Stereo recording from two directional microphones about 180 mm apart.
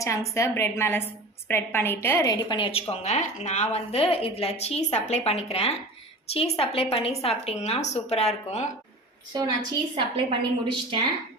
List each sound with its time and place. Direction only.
0.0 s a woman's voice: 15° left (ahead or behind); by 8.6 s 35° left (ahead or behind)
9.9 s a woman's voice: 30° right (ahead or behind)